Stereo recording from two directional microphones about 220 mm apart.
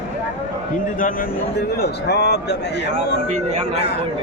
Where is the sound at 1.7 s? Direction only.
50° left (ahead or behind).